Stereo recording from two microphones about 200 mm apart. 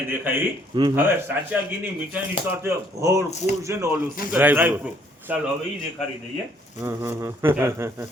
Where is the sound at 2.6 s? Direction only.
15° right (ahead or behind).